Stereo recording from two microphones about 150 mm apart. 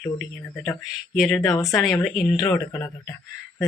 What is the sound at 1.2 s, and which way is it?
Speech, 20° left (ahead or behind).